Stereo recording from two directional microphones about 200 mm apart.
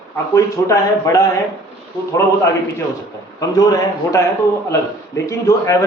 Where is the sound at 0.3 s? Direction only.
15° left (ahead or behind).